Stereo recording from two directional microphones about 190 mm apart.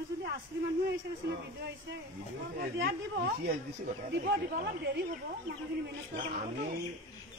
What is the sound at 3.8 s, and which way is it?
A man's voice, 60° right (ahead or behind).